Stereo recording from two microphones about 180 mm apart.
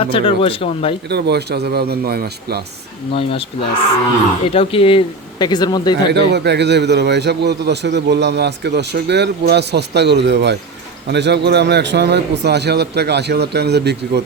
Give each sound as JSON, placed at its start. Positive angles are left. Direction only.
{"t": 0.0, "sound": "speech", "side_deg": 30}
{"t": 1.1, "sound": "speech", "side_deg": -65}
{"t": 3.2, "sound": "speech", "side_deg": 30}
{"t": 6.3, "sound": "a man's voice", "side_deg": -70}